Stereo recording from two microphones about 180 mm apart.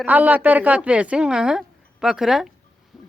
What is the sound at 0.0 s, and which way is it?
Speech, 10° right (ahead or behind).